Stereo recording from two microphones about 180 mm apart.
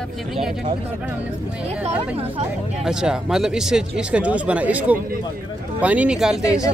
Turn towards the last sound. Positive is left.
turn(degrees=-5)  # may be behind; listen again after turning